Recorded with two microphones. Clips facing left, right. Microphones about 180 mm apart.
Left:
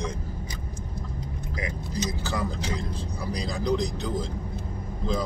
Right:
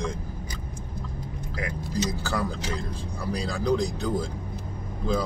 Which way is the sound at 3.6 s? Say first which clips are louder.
Right 2 dB; 10° right (ahead or behind).